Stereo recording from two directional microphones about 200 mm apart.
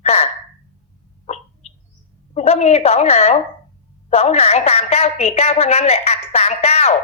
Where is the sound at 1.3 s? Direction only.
35° left (ahead or behind).